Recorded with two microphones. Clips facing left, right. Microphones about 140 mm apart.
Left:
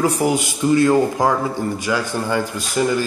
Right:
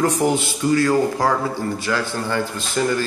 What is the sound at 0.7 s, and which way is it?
A man's voice, 20° left (ahead or behind).